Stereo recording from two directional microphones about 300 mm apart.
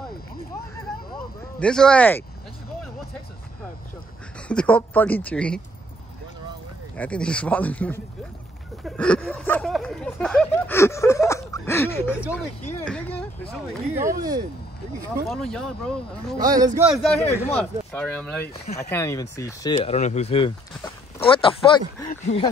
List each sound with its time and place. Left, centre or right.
1.1 s a sound: centre
4.5 s speech: centre
7.0 s speech: centre
12.2 s speech: centre
14.0 s speech: centre
15.2 s speech: centre
16.3 s speech: centre